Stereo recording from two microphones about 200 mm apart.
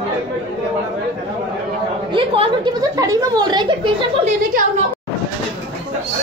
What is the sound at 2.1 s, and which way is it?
A woman's voice, 25° right (ahead or behind).